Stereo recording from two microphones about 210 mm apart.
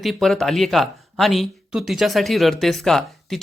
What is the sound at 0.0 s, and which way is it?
A man's voice, centre (ahead or behind).